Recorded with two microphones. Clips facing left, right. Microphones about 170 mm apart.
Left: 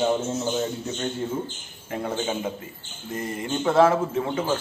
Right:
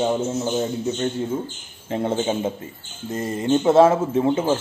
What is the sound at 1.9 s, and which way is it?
Speech, 25° right (ahead or behind).